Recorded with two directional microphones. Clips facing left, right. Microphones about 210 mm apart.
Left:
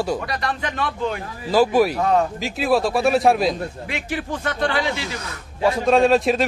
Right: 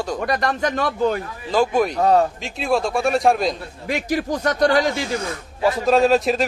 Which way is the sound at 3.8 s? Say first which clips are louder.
Right 9 dB; 40° right (ahead or behind).